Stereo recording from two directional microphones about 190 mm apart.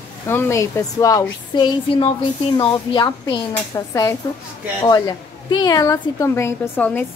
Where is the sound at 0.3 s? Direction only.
15° left (ahead or behind).